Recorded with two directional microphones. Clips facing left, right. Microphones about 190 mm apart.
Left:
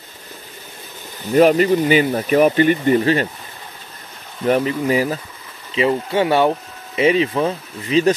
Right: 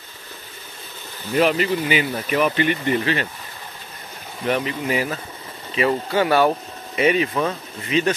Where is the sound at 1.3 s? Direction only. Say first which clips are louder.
Left 6 dB; 45° left (ahead or behind).